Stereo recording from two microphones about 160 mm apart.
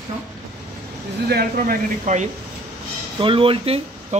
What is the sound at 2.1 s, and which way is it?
Speech, 50° right (ahead or behind).